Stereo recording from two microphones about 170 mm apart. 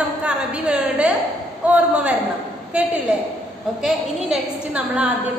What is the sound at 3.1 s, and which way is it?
A woman's voice, 5° right (ahead or behind).